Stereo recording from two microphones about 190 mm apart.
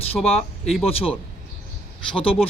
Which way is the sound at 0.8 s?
30° left (ahead or behind).